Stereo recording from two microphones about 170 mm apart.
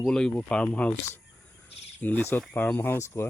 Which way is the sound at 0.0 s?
5° left (ahead or behind).